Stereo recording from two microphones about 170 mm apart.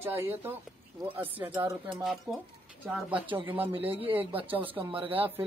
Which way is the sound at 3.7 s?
10° right (ahead or behind).